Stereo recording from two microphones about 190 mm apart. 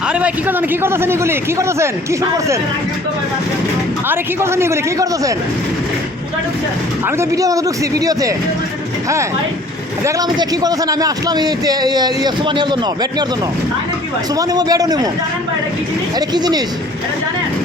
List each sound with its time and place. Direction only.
0.1 s a man's voice: 10° right (ahead or behind)
4.1 s a man's voice: 15° right (ahead or behind)
7.2 s a man's voice: 15° right (ahead or behind)
10.0 s a man's voice: 20° right (ahead or behind)
14.3 s a man's voice: 20° right (ahead or behind)
16.1 s a man's voice: 20° right (ahead or behind)